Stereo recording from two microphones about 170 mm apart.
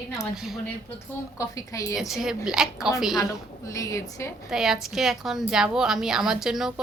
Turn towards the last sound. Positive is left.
turn(degrees=0)  # may be behind; listen again after turning